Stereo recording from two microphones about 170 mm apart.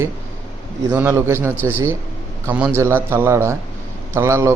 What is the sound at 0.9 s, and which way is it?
Speech, 15° right (ahead or behind).